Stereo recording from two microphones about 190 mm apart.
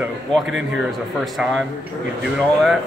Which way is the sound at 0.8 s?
Centre (ahead or behind).